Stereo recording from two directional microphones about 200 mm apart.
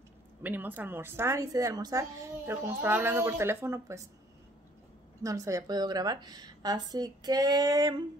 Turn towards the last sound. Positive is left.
turn(degrees=-20)  # may be behind; listen again after turning